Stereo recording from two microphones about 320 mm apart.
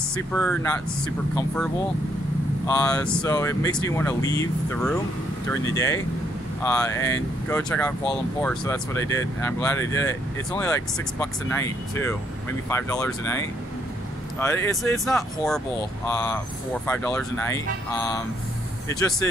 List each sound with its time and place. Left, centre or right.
0.3 s speech: centre
16.8 s speech: centre